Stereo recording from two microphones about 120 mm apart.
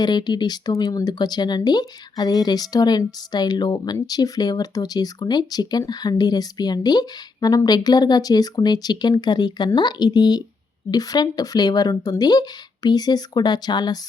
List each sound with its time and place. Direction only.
0.0 s speech: 35° left (ahead or behind)